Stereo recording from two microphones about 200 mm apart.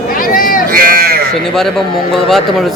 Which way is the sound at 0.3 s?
45° left (ahead or behind).